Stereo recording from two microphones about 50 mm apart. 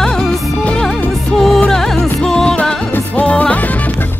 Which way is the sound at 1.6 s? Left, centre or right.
Centre.